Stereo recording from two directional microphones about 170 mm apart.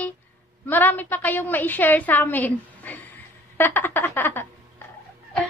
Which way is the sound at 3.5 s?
10° left (ahead or behind).